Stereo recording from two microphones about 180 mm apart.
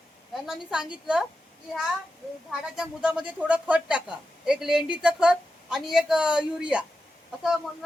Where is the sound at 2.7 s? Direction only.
5° right (ahead or behind).